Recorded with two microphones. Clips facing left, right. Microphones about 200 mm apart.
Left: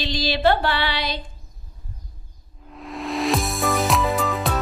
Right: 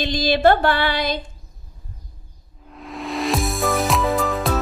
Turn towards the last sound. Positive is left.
turn(degrees=0)  # may be behind; listen again after turning